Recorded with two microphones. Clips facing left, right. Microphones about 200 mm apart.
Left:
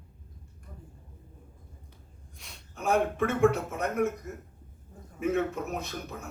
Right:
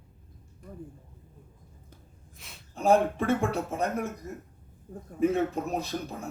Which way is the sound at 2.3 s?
Centre (ahead or behind).